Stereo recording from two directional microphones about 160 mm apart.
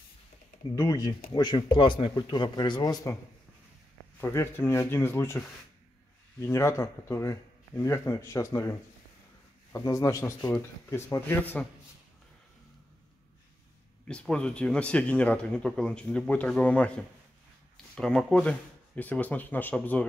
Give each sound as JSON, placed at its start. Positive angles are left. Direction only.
{"t": 0.7, "sound": "a man's voice", "side_deg": 20}
{"t": 4.2, "sound": "speech", "side_deg": 15}
{"t": 6.4, "sound": "a man's voice", "side_deg": 15}
{"t": 14.0, "sound": "speech", "side_deg": 5}
{"t": 17.9, "sound": "speech", "side_deg": 5}